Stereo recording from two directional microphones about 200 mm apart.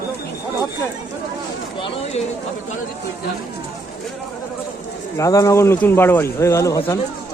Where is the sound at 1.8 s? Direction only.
30° left (ahead or behind).